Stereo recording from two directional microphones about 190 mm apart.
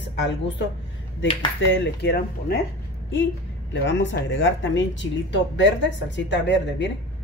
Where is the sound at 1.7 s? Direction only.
65° left (ahead or behind).